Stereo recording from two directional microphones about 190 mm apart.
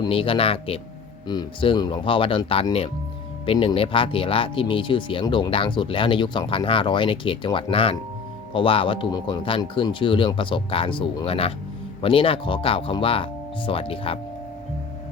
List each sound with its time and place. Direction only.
0.0 s speech: 30° left (ahead or behind)